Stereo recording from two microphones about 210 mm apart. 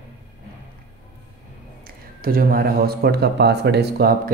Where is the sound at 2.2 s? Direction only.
45° right (ahead or behind).